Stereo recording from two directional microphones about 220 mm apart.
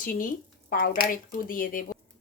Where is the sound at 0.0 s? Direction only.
35° left (ahead or behind).